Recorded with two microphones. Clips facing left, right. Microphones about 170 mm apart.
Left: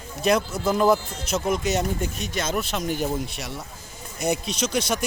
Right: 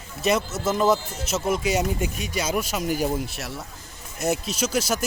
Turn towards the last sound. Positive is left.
turn(degrees=-5)  # may be behind; listen again after turning